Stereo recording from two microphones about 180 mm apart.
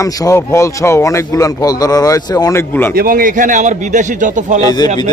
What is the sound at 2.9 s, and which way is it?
A man's voice, 50° right (ahead or behind).